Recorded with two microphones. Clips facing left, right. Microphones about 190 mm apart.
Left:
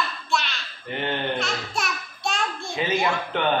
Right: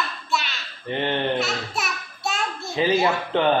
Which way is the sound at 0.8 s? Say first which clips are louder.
Right 3 dB; 30° right (ahead or behind).